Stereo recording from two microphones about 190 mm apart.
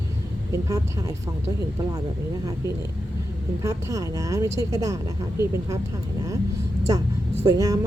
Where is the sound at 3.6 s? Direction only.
15° right (ahead or behind).